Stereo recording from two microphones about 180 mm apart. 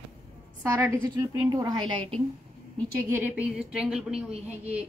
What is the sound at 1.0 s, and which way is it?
A woman's voice, 20° right (ahead or behind).